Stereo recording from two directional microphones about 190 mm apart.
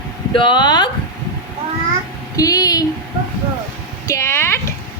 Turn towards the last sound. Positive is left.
turn(degrees=15)  # may be behind; listen again after turning